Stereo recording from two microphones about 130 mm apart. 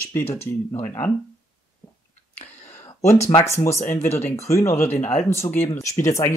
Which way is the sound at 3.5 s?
20° left (ahead or behind).